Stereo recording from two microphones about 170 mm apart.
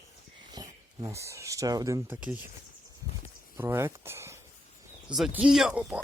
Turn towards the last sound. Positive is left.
turn(degrees=-10)  # may be behind; listen again after turning